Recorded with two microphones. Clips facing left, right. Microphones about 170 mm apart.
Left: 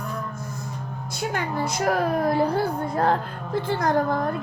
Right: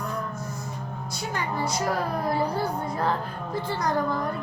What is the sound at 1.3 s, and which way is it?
Speech, 60° left (ahead or behind).